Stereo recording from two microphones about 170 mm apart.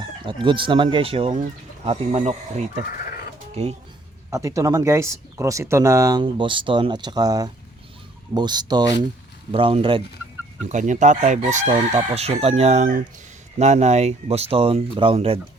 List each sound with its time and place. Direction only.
0.3 s speech: 30° right (ahead or behind)
3.5 s speech: 35° right (ahead or behind)
4.3 s speech: 20° right (ahead or behind)
6.2 s speech: 30° right (ahead or behind)
10.7 s chicken: 45° right (ahead or behind)
13.6 s speech: 40° right (ahead or behind)